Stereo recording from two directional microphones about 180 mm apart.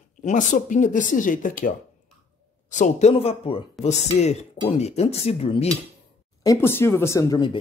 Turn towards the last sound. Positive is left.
turn(degrees=25)  # may be behind; listen again after turning